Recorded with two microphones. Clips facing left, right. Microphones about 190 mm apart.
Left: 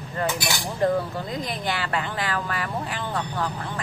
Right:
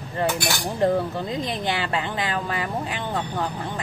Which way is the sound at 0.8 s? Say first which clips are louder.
Right 1 dB; 25° right (ahead or behind).